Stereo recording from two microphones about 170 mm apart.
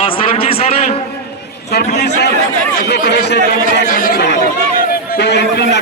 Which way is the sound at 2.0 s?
75° left (ahead or behind).